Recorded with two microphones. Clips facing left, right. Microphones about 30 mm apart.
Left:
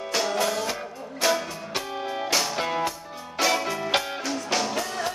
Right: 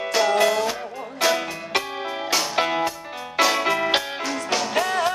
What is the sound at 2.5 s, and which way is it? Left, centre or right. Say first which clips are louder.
Music: right 4 dB; right.